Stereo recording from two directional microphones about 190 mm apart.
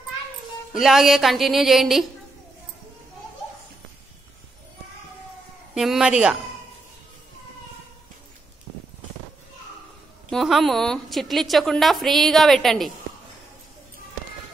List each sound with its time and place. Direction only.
0.7 s a woman's voice: centre (ahead or behind)
5.8 s a woman's voice: centre (ahead or behind)
10.3 s a woman's voice: centre (ahead or behind)